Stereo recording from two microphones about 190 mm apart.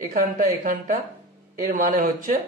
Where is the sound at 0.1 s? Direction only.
45° right (ahead or behind).